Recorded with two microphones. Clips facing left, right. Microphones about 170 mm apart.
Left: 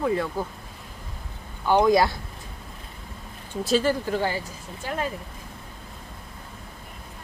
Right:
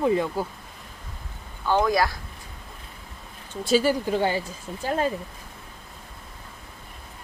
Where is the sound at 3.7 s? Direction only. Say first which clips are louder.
Right 1 dB; 5° right (ahead or behind).